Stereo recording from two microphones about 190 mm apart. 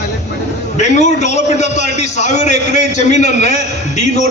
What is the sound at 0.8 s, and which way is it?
A man's voice, 40° left (ahead or behind).